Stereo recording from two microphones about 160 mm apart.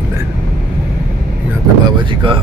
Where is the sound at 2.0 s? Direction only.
30° right (ahead or behind).